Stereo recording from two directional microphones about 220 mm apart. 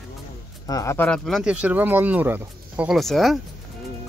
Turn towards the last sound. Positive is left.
turn(degrees=0)  # may be behind; listen again after turning